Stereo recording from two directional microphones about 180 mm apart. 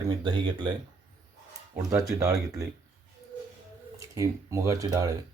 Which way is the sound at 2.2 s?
15° right (ahead or behind).